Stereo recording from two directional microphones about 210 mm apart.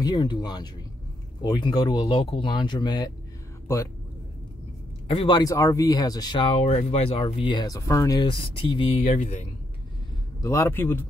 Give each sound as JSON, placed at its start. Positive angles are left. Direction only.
{"t": 0.0, "sound": "speech", "side_deg": 20}
{"t": 5.0, "sound": "speech", "side_deg": 25}
{"t": 10.4, "sound": "a man's voice", "side_deg": 15}